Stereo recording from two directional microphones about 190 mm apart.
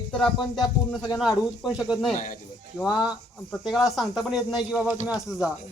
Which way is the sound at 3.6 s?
Centre (ahead or behind).